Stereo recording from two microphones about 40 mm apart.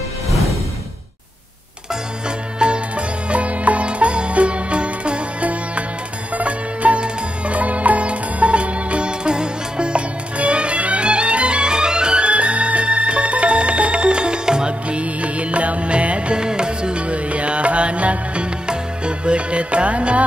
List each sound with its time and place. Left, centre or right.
2.2 s music: right